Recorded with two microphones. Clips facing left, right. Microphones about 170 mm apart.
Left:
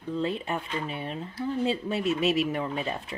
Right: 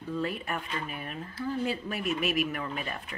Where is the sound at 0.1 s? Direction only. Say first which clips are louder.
Left 3 dB; 25° left (ahead or behind).